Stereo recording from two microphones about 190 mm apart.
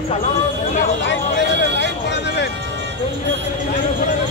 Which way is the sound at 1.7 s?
65° left (ahead or behind).